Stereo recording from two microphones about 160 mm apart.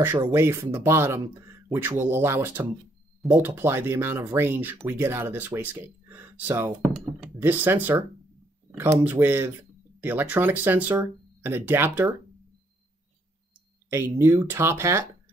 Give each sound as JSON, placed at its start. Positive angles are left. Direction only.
{"t": 0.3, "sound": "speech", "side_deg": -15}
{"t": 13.8, "sound": "speech", "side_deg": -15}